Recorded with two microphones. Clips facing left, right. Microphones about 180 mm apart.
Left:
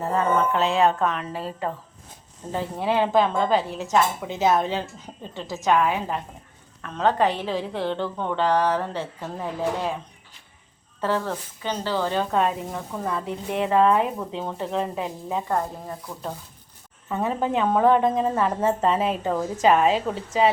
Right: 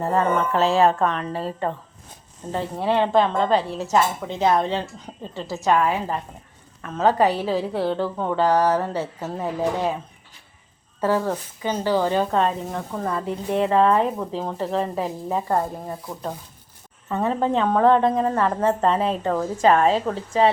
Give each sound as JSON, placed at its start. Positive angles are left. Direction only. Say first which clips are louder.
{"t": 0.0, "sound": "speech", "louder": "right 1 dB", "side_deg": 0}
{"t": 11.0, "sound": "speech", "louder": "right 4 dB", "side_deg": -10}
{"t": 12.3, "sound": "speech", "louder": "right 1 dB", "side_deg": 5}
{"t": 17.1, "sound": "a woman's voice", "louder": "right 3 dB", "side_deg": 0}
{"t": 18.9, "sound": "a woman's voice", "louder": "right 1 dB", "side_deg": -30}
{"t": 19.2, "sound": "speech", "louder": "right 2 dB", "side_deg": 5}